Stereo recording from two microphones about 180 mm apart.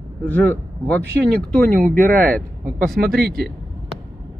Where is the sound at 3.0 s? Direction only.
55° right (ahead or behind).